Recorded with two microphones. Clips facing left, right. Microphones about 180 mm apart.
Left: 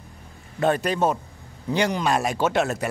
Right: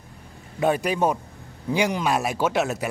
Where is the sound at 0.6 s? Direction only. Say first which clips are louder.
Even; 10° right (ahead or behind).